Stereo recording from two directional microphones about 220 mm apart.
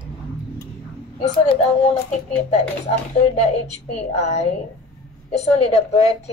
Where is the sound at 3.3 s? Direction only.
30° left (ahead or behind).